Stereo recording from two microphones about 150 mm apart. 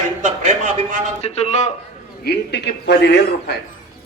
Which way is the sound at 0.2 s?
55° right (ahead or behind).